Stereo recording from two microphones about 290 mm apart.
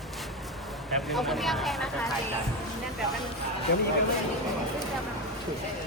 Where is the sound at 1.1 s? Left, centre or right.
Centre.